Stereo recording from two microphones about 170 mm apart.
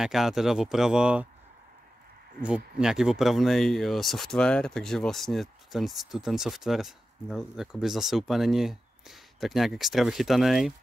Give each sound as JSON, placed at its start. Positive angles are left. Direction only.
{"t": 0.0, "sound": "speech", "side_deg": 0}
{"t": 2.4, "sound": "speech", "side_deg": -5}